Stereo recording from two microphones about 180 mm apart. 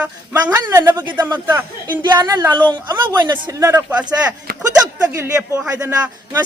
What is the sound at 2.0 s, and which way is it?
Speech, 25° right (ahead or behind).